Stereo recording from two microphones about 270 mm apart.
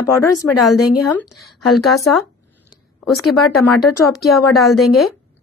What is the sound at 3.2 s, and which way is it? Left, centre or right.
Speech, centre.